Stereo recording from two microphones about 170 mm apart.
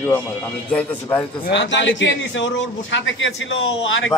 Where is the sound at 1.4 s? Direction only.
90° left.